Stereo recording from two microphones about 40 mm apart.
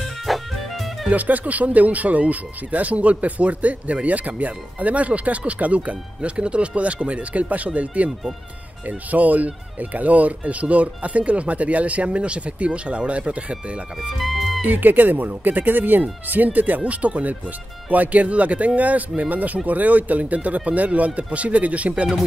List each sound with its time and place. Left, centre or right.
0.3 s music: centre
1.1 s speech: right
14.1 s speech: centre
14.6 s speech: right
16.8 s speech: right